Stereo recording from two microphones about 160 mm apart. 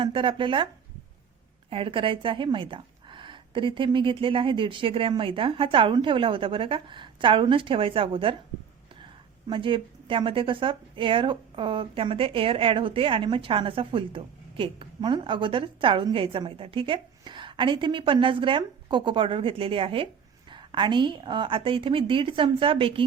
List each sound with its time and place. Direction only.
0.0 s a woman's voice: 30° right (ahead or behind)
1.7 s a woman's voice: 35° right (ahead or behind)
9.5 s a woman's voice: 30° right (ahead or behind)